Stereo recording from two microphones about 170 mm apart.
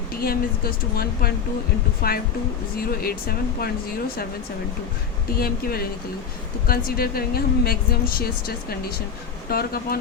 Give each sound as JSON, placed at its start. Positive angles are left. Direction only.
{"t": 0.2, "sound": "a woman's voice", "side_deg": 65}
{"t": 5.4, "sound": "a woman's voice", "side_deg": 60}